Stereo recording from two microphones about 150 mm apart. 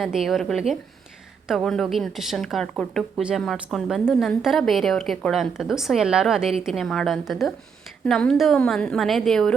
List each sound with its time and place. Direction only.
0.0 s a woman's voice: centre (ahead or behind)